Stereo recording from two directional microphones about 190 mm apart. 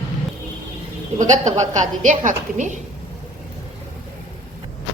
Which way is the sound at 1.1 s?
40° right (ahead or behind).